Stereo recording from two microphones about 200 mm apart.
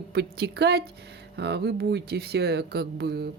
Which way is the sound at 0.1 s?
55° right (ahead or behind).